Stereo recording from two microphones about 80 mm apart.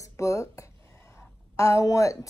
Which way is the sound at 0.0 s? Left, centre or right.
Left.